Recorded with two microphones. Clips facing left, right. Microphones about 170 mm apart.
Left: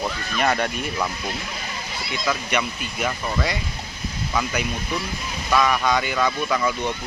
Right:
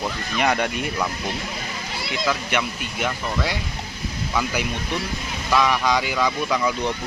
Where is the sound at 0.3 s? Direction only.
15° right (ahead or behind).